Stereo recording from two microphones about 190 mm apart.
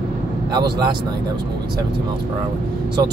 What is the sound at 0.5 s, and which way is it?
Speech, 20° right (ahead or behind).